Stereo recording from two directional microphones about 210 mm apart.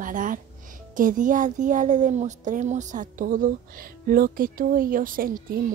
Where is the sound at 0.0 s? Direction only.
40° right (ahead or behind).